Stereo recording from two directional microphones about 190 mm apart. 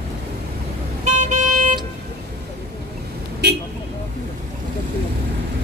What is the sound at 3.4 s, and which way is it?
Vehicle, 60° right (ahead or behind).